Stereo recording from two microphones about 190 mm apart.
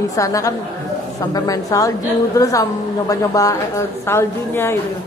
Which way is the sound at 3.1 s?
20° left (ahead or behind).